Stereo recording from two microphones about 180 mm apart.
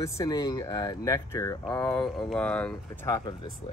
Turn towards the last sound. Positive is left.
turn(degrees=25)  # may be behind; listen again after turning